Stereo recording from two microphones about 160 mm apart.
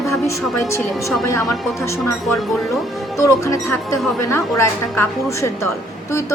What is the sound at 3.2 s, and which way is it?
A woman's voice, 20° left (ahead or behind).